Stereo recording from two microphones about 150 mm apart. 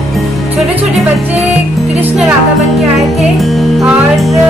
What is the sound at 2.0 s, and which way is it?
Speech, 10° right (ahead or behind).